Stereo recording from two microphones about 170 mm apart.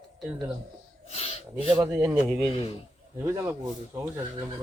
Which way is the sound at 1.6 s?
20° right (ahead or behind).